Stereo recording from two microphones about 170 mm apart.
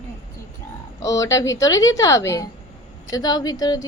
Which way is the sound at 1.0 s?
20° left (ahead or behind).